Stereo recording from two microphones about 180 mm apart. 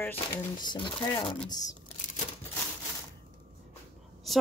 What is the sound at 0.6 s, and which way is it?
Speech, 25° left (ahead or behind).